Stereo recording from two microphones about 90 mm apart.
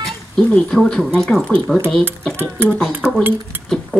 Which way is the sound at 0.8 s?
10° left (ahead or behind).